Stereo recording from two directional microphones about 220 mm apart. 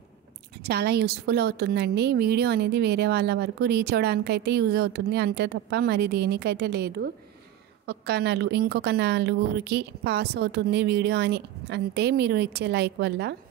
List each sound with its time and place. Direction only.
0.7 s a woman's voice: 50° right (ahead or behind)